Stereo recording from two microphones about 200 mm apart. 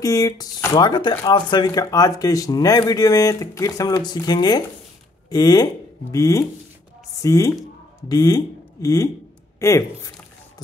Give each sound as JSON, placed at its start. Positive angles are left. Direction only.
{"t": 0.0, "sound": "speech", "side_deg": 20}